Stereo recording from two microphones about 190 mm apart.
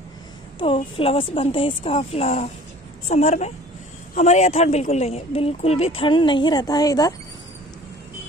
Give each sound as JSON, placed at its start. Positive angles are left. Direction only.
{"t": 0.7, "sound": "speech", "side_deg": 30}